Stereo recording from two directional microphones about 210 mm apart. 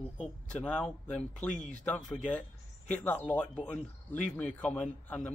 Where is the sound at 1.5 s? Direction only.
35° left (ahead or behind).